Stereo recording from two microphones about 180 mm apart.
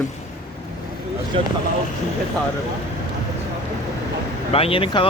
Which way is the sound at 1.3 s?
30° right (ahead or behind).